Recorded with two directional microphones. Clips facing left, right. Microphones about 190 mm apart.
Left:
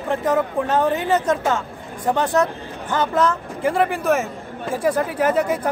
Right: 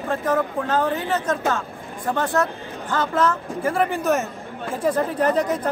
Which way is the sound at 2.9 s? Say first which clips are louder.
Left 2 dB; 15° left (ahead or behind).